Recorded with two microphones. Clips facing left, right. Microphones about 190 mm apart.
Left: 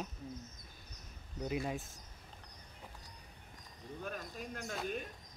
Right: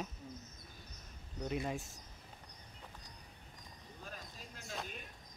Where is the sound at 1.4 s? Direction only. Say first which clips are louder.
Left 1 dB; centre (ahead or behind).